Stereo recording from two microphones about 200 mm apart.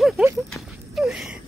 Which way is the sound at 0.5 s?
Centre (ahead or behind).